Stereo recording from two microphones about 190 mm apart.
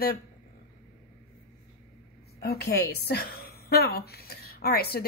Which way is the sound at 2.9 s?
55° left (ahead or behind).